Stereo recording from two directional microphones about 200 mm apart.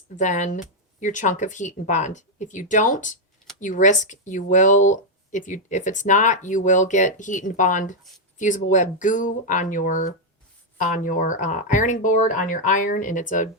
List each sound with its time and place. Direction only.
0.2 s speech: 40° left (ahead or behind)